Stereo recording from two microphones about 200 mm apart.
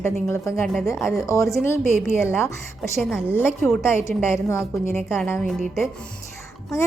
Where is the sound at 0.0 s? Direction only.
15° left (ahead or behind).